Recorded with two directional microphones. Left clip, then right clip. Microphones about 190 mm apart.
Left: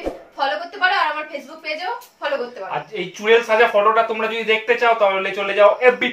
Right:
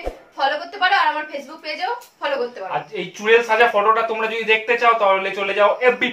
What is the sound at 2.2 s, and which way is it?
Speech, 25° right (ahead or behind).